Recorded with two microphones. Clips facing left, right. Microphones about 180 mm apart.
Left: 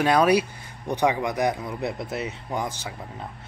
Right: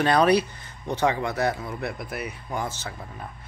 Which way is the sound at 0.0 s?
10° left (ahead or behind).